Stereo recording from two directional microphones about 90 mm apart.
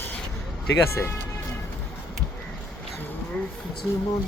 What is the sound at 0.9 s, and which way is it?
Speech, 30° left (ahead or behind).